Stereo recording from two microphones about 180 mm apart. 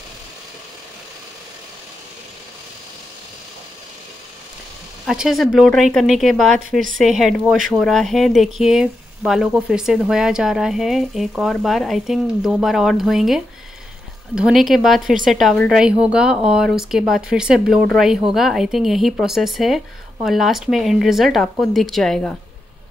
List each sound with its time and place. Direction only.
5.0 s speech: 5° right (ahead or behind)